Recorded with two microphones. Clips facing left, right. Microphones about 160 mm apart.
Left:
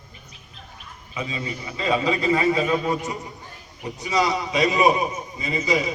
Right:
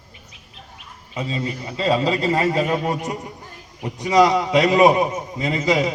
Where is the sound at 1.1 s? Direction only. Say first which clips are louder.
Right 4 dB; 40° right (ahead or behind); by 3.3 s 55° right (ahead or behind).